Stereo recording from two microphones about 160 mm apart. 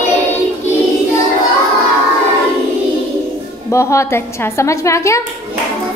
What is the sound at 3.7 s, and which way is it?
A woman's voice, 20° left (ahead or behind).